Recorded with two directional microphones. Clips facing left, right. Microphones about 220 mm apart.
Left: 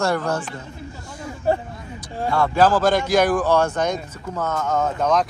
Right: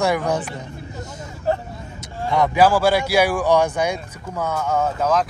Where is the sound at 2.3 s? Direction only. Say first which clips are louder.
Right 1 dB; 15° right (ahead or behind).